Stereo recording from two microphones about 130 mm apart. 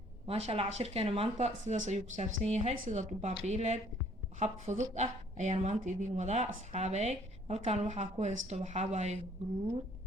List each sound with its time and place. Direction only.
0.3 s speech: 50° right (ahead or behind)
5.8 s speech: 70° right (ahead or behind)